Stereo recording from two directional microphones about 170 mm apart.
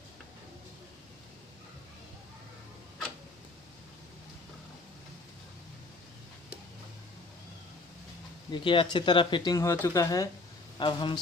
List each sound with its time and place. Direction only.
8.5 s speech: 30° left (ahead or behind)